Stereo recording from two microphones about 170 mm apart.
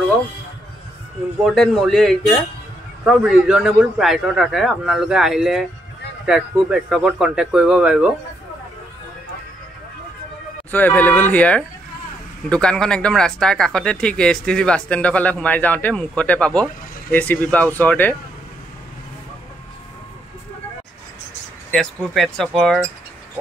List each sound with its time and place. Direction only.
1.4 s speech: centre (ahead or behind)
10.7 s speech: 10° left (ahead or behind)
21.6 s speech: centre (ahead or behind)